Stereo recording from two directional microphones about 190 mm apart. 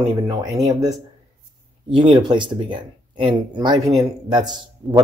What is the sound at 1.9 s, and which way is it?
Speech, 25° right (ahead or behind).